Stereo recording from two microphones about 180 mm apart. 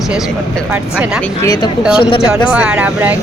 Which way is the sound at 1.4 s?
20° left (ahead or behind).